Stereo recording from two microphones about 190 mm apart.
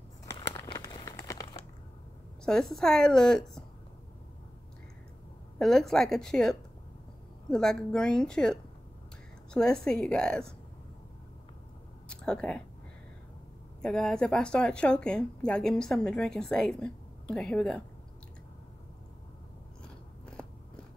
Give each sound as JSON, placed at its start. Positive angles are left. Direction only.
{"t": 0.3, "sound": "crumpling", "side_deg": 20}
{"t": 2.4, "sound": "a woman's voice", "side_deg": 5}
{"t": 5.6, "sound": "a woman's voice", "side_deg": 0}
{"t": 12.1, "sound": "speech", "side_deg": 5}
{"t": 13.8, "sound": "a woman's voice", "side_deg": 5}
{"t": 20.2, "sound": "biting", "side_deg": 5}